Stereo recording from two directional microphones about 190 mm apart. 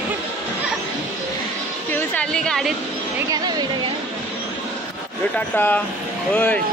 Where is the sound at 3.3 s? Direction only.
20° right (ahead or behind).